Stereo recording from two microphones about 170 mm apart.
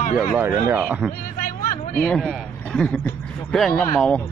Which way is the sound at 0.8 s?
5° right (ahead or behind).